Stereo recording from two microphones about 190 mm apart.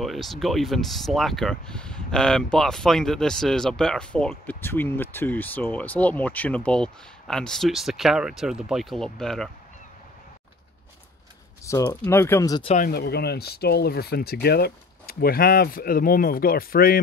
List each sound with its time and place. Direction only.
0.0 s speech: centre (ahead or behind)
11.6 s speech: 15° left (ahead or behind)
12.6 s speech: 40° left (ahead or behind)
12.9 s speech: 55° left (ahead or behind)